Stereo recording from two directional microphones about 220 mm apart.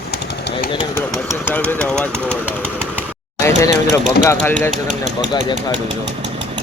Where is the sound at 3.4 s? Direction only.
15° left (ahead or behind).